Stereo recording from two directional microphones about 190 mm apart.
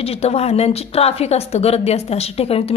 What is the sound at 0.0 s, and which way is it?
A woman's voice, 35° left (ahead or behind).